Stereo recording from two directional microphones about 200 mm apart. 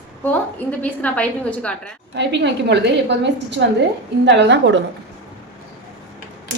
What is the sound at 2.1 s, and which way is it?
A woman's voice, 60° right (ahead or behind).